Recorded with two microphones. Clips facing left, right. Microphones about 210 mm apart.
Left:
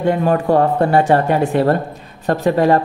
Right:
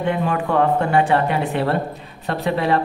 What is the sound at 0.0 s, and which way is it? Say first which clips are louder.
Speech: left 5 dB; 40° left (ahead or behind).